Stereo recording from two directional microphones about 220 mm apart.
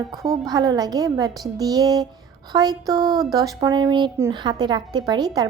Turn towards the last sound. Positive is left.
turn(degrees=-20)  # may be behind; listen again after turning